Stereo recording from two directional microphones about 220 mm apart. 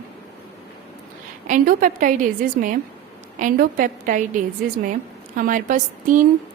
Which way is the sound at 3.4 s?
40° right (ahead or behind).